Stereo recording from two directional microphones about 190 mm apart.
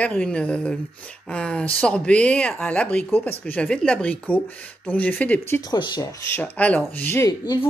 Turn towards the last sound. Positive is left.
turn(degrees=20)  # may be behind; listen again after turning